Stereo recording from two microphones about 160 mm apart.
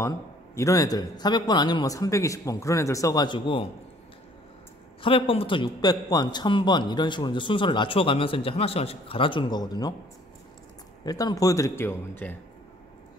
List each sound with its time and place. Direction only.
0.6 s a man's voice: 20° left (ahead or behind)
5.0 s a man's voice: 35° left (ahead or behind)
11.1 s a man's voice: 25° left (ahead or behind)